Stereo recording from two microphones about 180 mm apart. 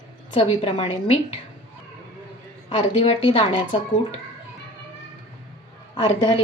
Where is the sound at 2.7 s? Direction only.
30° left (ahead or behind).